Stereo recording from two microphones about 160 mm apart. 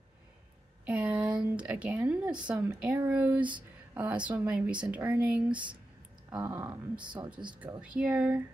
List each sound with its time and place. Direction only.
0.8 s speech: 10° right (ahead or behind)
6.6 s speech: 25° right (ahead or behind)
7.4 s speech: 10° right (ahead or behind)